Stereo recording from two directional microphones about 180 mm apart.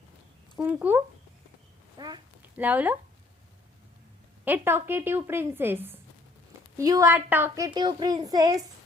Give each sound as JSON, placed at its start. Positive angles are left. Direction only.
{"t": 0.7, "sound": "a woman's voice", "side_deg": -10}
{"t": 2.0, "sound": "a woman's voice", "side_deg": -25}
{"t": 2.6, "sound": "a woman's voice", "side_deg": -10}
{"t": 4.4, "sound": "a woman's voice", "side_deg": -10}